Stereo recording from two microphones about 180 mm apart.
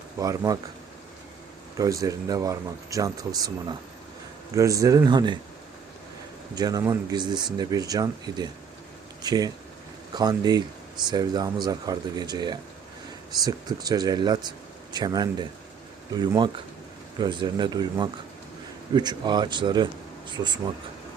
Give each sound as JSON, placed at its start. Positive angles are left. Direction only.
{"t": 0.2, "sound": "speech", "side_deg": -20}
{"t": 1.8, "sound": "speech", "side_deg": -20}
{"t": 6.6, "sound": "speech", "side_deg": -20}